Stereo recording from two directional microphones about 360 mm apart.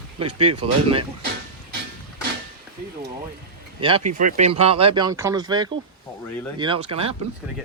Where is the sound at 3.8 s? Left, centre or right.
Centre.